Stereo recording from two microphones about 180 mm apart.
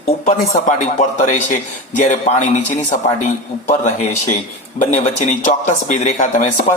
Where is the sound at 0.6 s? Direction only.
45° left (ahead or behind).